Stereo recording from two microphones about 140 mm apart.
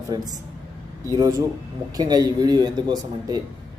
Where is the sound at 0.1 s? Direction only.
30° right (ahead or behind).